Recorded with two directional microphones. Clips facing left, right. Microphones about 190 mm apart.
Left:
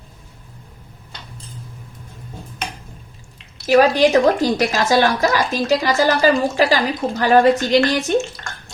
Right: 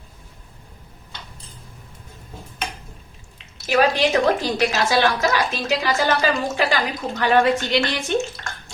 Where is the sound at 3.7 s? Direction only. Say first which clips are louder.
Left 5 dB; 40° left (ahead or behind).